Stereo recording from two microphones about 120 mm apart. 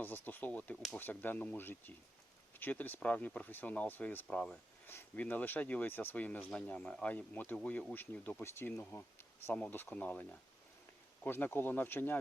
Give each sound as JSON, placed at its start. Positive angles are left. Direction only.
{"t": 0.0, "sound": "speech", "side_deg": 15}